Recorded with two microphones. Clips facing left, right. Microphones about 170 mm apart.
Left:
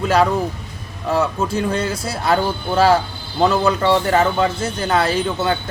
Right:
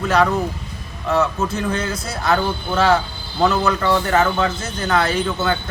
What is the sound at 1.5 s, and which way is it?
A man's voice, 30° left (ahead or behind).